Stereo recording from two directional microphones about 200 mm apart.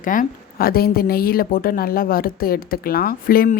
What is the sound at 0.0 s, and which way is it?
A woman's voice, 40° left (ahead or behind).